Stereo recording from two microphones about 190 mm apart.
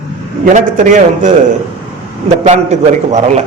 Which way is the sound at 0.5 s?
40° right (ahead or behind).